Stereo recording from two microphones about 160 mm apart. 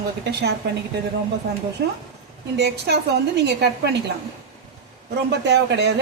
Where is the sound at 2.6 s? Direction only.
90° right.